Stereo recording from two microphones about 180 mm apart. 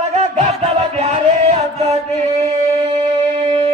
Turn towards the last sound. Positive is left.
turn(degrees=-40)  # may be behind; listen again after turning